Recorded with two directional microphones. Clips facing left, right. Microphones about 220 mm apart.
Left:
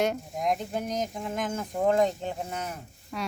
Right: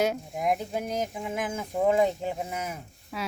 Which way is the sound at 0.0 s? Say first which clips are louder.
Right 1 dB; 5° right (ahead or behind).